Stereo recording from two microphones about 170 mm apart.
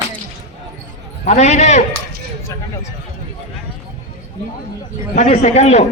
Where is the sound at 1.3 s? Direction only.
45° left (ahead or behind).